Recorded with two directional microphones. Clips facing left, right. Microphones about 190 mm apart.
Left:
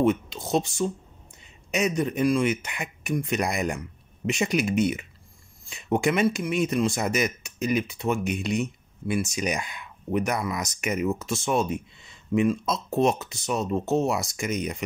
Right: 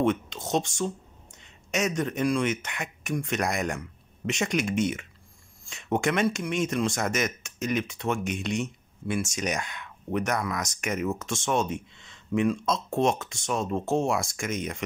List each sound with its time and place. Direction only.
0.0 s speech: 5° left (ahead or behind)